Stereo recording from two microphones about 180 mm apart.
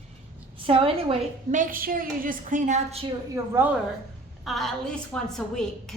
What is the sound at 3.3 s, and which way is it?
Speech, 10° right (ahead or behind).